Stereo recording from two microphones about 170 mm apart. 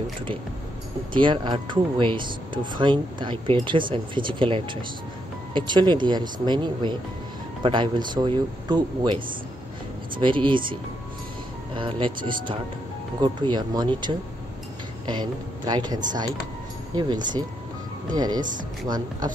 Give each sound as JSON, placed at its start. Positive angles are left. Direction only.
{"t": 1.1, "sound": "speech", "side_deg": -30}
{"t": 13.2, "sound": "speech", "side_deg": -25}